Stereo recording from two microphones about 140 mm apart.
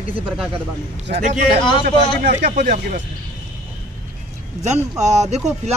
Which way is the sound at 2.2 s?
75° right (ahead or behind).